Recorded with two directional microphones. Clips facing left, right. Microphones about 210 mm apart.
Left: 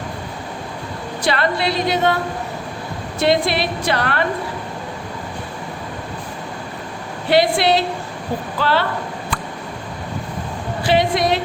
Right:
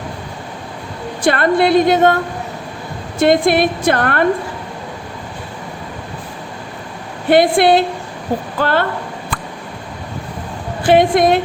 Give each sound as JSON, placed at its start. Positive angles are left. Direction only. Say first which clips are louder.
{"t": 1.2, "sound": "a woman's voice", "louder": "right 6 dB", "side_deg": -50}
{"t": 3.2, "sound": "a woman's voice", "louder": "right 5 dB", "side_deg": -50}
{"t": 7.3, "sound": "a woman's voice", "louder": "right 5 dB", "side_deg": -50}
{"t": 10.8, "sound": "a woman's voice", "louder": "right 6 dB", "side_deg": -50}